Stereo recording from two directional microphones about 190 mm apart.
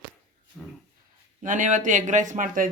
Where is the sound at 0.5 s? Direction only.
5° left (ahead or behind).